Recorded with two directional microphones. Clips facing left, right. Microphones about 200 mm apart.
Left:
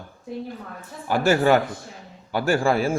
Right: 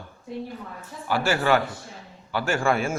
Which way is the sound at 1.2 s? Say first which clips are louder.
Left 5 dB; 45° left (ahead or behind).